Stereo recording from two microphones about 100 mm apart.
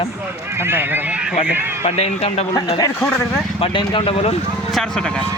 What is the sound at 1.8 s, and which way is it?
Speech, 90° left.